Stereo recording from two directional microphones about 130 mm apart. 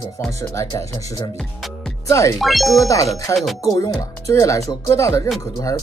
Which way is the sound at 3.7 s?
25° left (ahead or behind).